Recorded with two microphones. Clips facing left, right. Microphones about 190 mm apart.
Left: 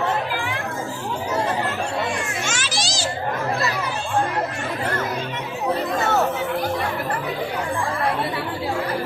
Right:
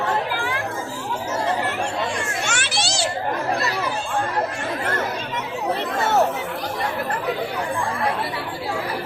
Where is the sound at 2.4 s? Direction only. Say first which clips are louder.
Right 1 dB; 65° right (ahead or behind).